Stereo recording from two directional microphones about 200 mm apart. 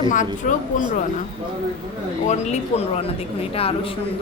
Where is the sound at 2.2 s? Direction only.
35° left (ahead or behind).